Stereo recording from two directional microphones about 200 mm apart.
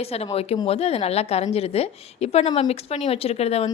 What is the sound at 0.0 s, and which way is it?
A woman's voice, 30° left (ahead or behind).